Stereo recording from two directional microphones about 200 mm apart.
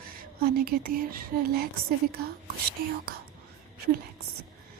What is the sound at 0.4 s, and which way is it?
Speech, 50° right (ahead or behind).